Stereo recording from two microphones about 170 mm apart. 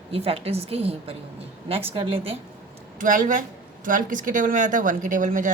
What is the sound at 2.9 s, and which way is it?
Speech, 50° right (ahead or behind).